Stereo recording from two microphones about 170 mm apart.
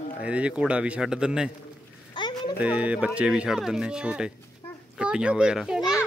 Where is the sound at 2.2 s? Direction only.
25° left (ahead or behind).